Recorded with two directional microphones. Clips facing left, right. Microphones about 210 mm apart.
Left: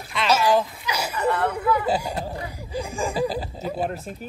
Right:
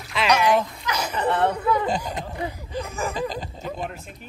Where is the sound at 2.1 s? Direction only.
35° left (ahead or behind).